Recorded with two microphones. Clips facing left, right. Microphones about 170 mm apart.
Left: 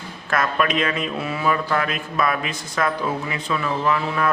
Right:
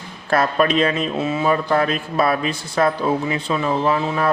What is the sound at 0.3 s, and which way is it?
Speech, 30° right (ahead or behind).